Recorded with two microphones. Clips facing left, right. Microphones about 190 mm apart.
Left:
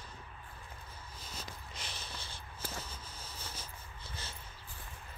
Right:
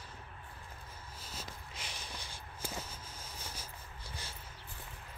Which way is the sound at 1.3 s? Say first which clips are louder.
Even; 5° right (ahead or behind).